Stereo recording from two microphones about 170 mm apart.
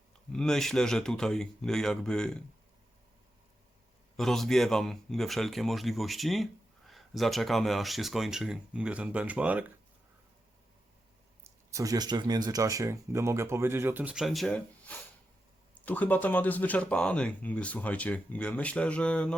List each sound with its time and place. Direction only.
0.3 s a man's voice: 5° left (ahead or behind)
4.2 s a man's voice: centre (ahead or behind)
11.4 s speech: 20° right (ahead or behind); by 19.4 s 5° left (ahead or behind)